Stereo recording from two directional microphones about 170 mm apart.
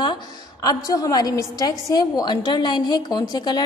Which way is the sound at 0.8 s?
20° left (ahead or behind).